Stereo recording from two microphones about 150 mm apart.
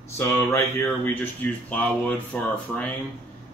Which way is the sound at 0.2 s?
20° left (ahead or behind).